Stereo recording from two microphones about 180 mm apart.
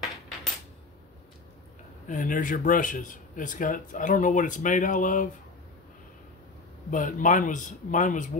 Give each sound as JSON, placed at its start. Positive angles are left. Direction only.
{"t": 2.0, "sound": "speech", "side_deg": 45}
{"t": 6.9, "sound": "speech", "side_deg": 45}